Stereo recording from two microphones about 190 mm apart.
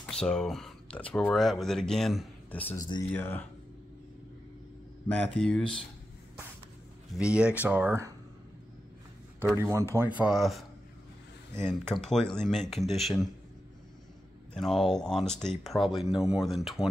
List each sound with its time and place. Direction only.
0.0 s a sound: 5° left (ahead or behind)
1.1 s speech: centre (ahead or behind)
2.7 s speech: 20° left (ahead or behind)
3.1 s speech: 10° left (ahead or behind)
5.0 s speech: 5° left (ahead or behind)
7.2 s speech: 5° right (ahead or behind)
9.4 s speech: 15° right (ahead or behind)
11.9 s speech: centre (ahead or behind)
14.5 s speech: centre (ahead or behind)